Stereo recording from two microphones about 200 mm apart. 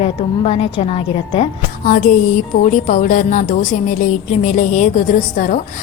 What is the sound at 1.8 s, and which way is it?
A woman's voice, 40° left (ahead or behind).